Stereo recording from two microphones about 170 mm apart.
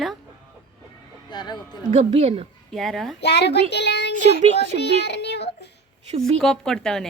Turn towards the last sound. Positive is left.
turn(degrees=5)  # may be behind; listen again after turning